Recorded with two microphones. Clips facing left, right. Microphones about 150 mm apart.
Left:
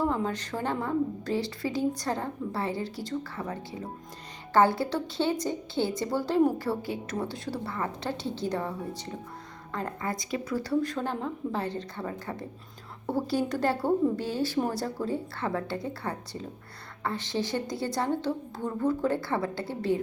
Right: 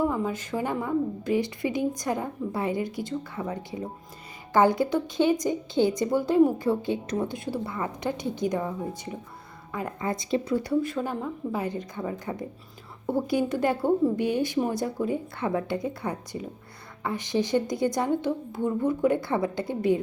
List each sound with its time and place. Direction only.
0.0 s a woman's voice: 10° right (ahead or behind)
9.7 s speech: 15° right (ahead or behind)
10.9 s a woman's voice: 5° right (ahead or behind)